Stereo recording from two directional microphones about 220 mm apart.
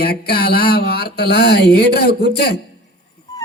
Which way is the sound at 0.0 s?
45° left (ahead or behind).